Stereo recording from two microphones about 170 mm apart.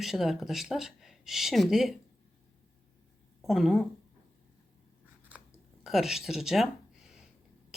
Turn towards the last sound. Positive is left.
turn(degrees=0)  # may be behind; listen again after turning